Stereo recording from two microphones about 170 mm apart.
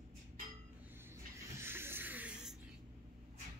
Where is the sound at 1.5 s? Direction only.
15° right (ahead or behind).